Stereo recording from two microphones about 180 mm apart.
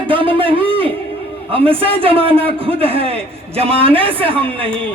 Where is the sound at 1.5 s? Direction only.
30° right (ahead or behind).